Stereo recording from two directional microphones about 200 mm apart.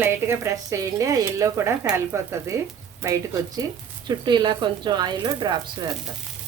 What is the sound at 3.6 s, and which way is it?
Speech, 15° right (ahead or behind).